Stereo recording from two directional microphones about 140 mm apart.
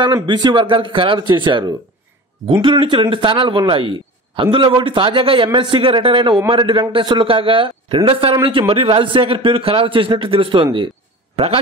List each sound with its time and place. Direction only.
0.0 s a man's voice: 30° right (ahead or behind)